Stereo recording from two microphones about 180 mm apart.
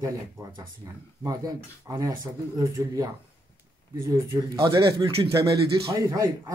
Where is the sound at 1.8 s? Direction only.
20° right (ahead or behind).